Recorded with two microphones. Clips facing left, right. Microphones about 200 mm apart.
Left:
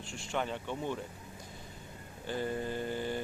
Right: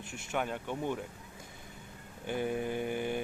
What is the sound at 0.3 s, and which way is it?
Speech, 10° right (ahead or behind).